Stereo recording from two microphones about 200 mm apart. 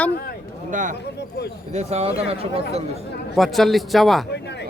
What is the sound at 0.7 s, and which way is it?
Speech, 40° right (ahead or behind).